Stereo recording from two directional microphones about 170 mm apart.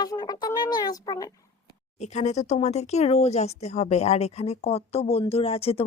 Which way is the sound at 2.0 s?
45° left (ahead or behind).